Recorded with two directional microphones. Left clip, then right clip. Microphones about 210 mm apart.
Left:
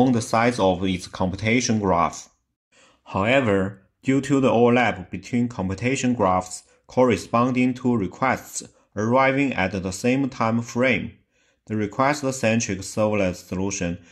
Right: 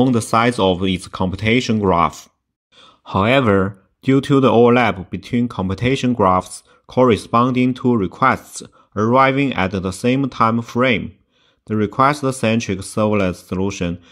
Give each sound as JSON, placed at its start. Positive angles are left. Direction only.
{"t": 0.0, "sound": "speech", "side_deg": -25}